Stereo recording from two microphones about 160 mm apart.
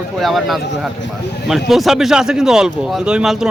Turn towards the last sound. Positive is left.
turn(degrees=0)  # may be behind; listen again after turning